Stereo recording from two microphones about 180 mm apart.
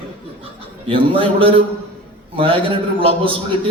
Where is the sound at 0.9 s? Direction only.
30° right (ahead or behind).